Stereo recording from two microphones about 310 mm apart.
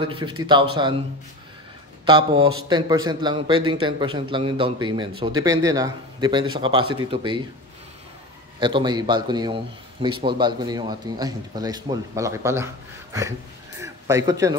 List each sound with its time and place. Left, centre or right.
0.0 s a man's voice: centre
2.0 s a man's voice: centre
8.5 s a man's voice: centre
13.7 s a sound: centre